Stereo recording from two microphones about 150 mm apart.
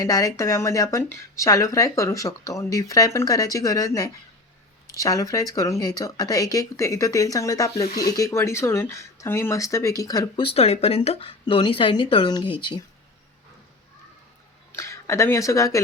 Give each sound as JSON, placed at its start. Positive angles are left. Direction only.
{"t": 0.0, "sound": "speech", "side_deg": 25}
{"t": 10.4, "sound": "speech", "side_deg": 40}
{"t": 14.7, "sound": "speech", "side_deg": 20}